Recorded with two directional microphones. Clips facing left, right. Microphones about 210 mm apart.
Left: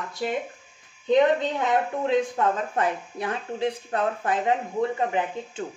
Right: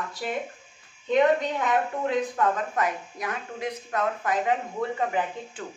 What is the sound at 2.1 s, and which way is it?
Speech, 25° left (ahead or behind).